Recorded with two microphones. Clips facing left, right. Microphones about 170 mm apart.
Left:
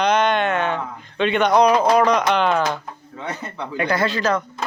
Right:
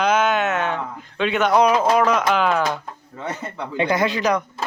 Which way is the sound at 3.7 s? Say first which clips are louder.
Right 1 dB; 20° right (ahead or behind).